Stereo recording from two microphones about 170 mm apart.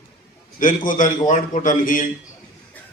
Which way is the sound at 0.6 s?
50° left (ahead or behind).